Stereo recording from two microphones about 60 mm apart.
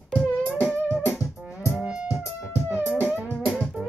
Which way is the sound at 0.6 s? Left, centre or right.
Right.